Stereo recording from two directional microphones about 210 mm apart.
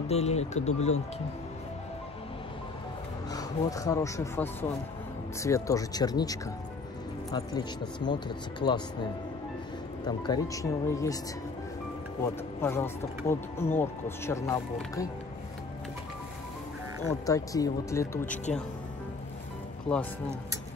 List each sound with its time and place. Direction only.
0.1 s speech: 30° left (ahead or behind)
3.3 s speech: 15° left (ahead or behind)
10.0 s speech: 20° left (ahead or behind)
12.2 s speech: 10° left (ahead or behind)
17.3 s speech: 15° left (ahead or behind)
18.2 s speech: 35° left (ahead or behind)